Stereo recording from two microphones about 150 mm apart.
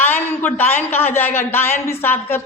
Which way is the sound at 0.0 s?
15° left (ahead or behind).